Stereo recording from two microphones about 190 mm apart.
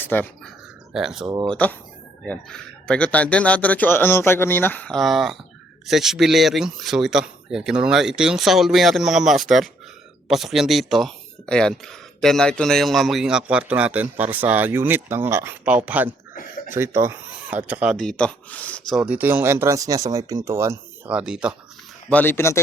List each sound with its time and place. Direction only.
0.0 s speech: 10° left (ahead or behind)
0.9 s speech: 5° right (ahead or behind)
1.3 s speech: 20° right (ahead or behind)
2.2 s speech: 5° left (ahead or behind)
18.9 s speech: 5° right (ahead or behind)
22.1 s speech: 10° left (ahead or behind)